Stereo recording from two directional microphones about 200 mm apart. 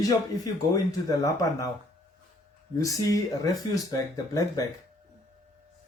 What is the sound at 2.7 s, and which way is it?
Speech, 15° left (ahead or behind).